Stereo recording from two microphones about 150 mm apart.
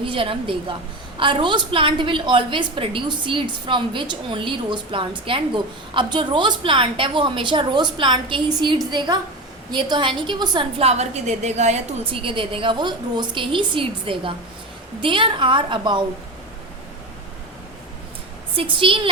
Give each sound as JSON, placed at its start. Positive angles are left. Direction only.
{"t": 0.0, "sound": "a woman's voice", "side_deg": -35}
{"t": 18.5, "sound": "a woman's voice", "side_deg": -35}